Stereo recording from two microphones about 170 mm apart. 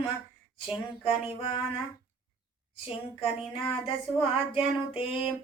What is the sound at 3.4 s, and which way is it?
Speech, 35° left (ahead or behind).